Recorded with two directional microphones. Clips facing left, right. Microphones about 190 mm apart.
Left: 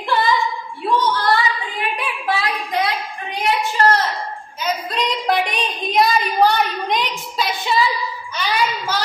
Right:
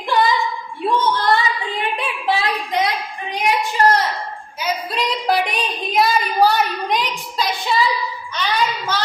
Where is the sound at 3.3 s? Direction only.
15° right (ahead or behind).